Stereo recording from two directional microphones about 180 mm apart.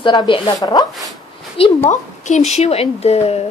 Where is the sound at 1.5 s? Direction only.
35° left (ahead or behind).